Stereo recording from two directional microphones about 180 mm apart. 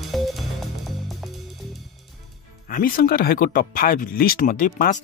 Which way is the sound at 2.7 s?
55° left (ahead or behind).